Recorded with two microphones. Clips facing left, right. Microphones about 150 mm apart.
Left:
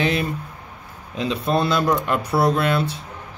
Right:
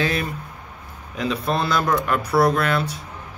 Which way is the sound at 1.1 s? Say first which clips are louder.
Left 2 dB; 25° left (ahead or behind).